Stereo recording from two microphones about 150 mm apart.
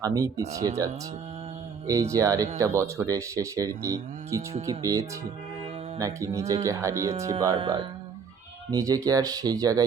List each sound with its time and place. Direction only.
0.0 s speech: 20° right (ahead or behind)
1.9 s speech: 20° right (ahead or behind)
7.5 s speech: 35° right (ahead or behind)
8.7 s speech: 20° right (ahead or behind)